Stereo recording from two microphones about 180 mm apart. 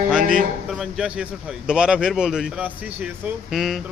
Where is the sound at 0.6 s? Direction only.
5° right (ahead or behind).